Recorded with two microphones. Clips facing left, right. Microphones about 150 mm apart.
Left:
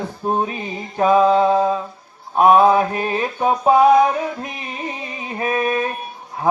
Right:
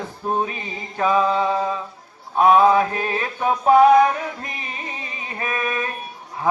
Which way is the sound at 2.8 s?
20° left (ahead or behind).